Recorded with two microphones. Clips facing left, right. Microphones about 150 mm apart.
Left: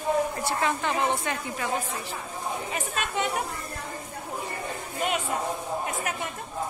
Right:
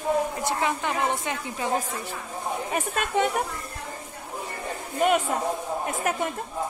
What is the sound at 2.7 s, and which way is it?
Speech, 50° right (ahead or behind).